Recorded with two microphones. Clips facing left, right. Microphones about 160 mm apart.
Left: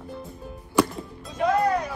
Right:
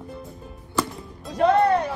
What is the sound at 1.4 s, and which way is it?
Music, 65° right (ahead or behind).